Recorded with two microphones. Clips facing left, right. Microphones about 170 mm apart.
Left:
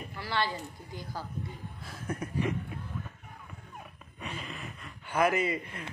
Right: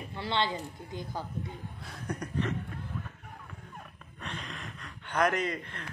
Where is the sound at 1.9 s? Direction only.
5° left (ahead or behind).